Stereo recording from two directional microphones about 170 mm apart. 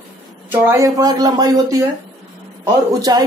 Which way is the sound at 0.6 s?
20° right (ahead or behind).